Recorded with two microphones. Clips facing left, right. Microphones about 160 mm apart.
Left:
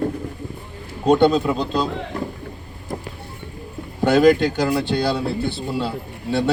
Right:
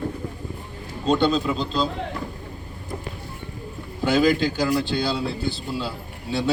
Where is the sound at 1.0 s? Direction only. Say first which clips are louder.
Left 5 dB; 60° left (ahead or behind).